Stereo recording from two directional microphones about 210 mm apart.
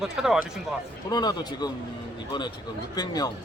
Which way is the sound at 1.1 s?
20° left (ahead or behind).